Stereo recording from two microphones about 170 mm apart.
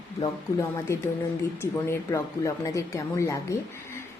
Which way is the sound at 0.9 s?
15° left (ahead or behind).